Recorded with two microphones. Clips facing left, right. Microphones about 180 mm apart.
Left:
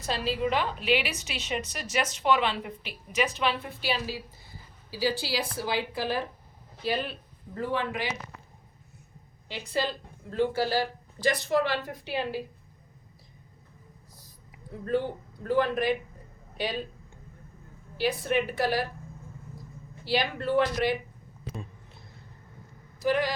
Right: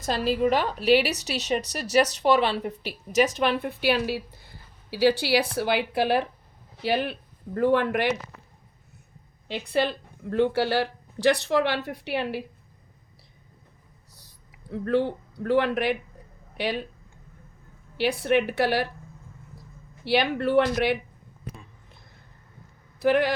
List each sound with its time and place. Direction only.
0.0 s a woman's voice: 45° right (ahead or behind); by 8.1 s 65° right (ahead or behind)
9.5 s a woman's voice: 60° right (ahead or behind)
14.1 s whispering: 75° right (ahead or behind)
15.4 s a woman's voice: 70° right (ahead or behind)
17.9 s a woman's voice: 70° right (ahead or behind)
20.1 s speech: 65° right (ahead or behind)
23.0 s speech: 60° right (ahead or behind)